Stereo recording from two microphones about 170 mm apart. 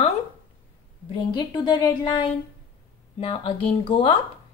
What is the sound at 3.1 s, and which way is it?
Speech, 30° left (ahead or behind).